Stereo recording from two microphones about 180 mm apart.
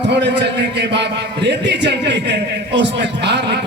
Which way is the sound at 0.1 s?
75° right (ahead or behind).